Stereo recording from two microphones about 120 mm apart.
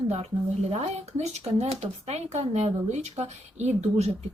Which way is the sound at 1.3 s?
60° right (ahead or behind).